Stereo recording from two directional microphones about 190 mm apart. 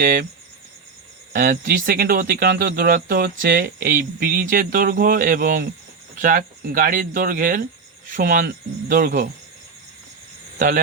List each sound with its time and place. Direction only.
0.0 s speech: 50° right (ahead or behind)
1.3 s speech: 55° right (ahead or behind)